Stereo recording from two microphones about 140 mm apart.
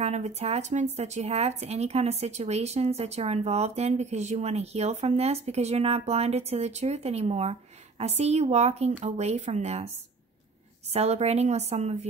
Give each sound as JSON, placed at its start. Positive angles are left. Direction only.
{"t": 0.0, "sound": "speech", "side_deg": -50}
{"t": 10.9, "sound": "speech", "side_deg": -50}